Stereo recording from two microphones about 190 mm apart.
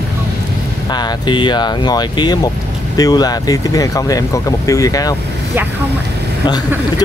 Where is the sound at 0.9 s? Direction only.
25° left (ahead or behind).